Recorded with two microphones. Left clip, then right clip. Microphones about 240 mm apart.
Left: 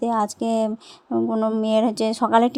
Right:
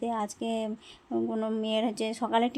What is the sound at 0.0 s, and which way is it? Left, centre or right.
A woman's voice, left.